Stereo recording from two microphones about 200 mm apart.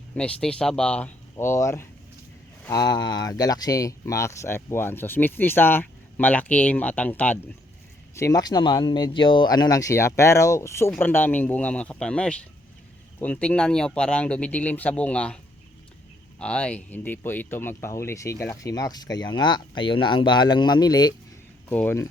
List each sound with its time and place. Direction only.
0.2 s speech: 5° left (ahead or behind)
16.4 s speech: 5° left (ahead or behind)
21.7 s speech: 10° left (ahead or behind)